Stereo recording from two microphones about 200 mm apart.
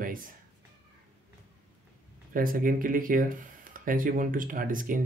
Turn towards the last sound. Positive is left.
turn(degrees=-40)  # may be behind; listen again after turning